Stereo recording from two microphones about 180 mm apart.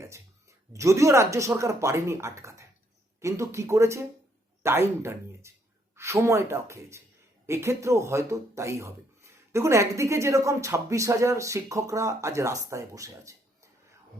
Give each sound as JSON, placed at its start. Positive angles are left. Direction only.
{"t": 0.7, "sound": "speech", "side_deg": -15}